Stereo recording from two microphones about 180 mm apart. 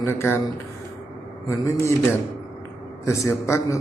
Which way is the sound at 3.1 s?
15° left (ahead or behind).